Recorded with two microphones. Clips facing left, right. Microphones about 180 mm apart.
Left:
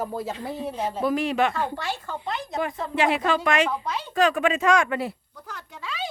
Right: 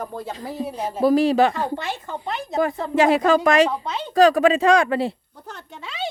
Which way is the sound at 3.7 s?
25° right (ahead or behind).